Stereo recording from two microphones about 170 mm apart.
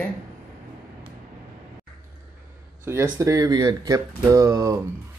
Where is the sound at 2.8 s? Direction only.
15° right (ahead or behind).